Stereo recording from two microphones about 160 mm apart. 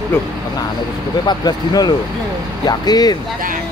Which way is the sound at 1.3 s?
25° left (ahead or behind).